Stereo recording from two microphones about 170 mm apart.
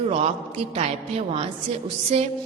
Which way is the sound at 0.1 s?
35° right (ahead or behind).